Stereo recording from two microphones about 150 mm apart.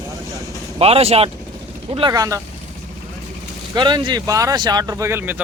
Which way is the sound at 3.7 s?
30° right (ahead or behind).